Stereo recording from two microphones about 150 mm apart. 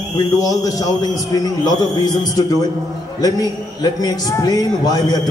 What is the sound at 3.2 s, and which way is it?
A man's voice, 25° left (ahead or behind).